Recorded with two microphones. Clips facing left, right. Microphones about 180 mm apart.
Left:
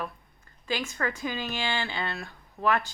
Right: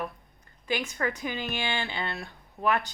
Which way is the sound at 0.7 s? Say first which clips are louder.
Right 1 dB; 20° right (ahead or behind).